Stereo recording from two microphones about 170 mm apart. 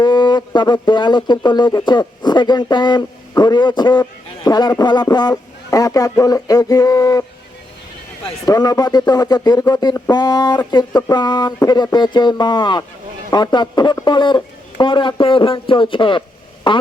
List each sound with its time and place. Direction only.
0.0 s speech: 25° left (ahead or behind)
8.4 s speech: 20° left (ahead or behind)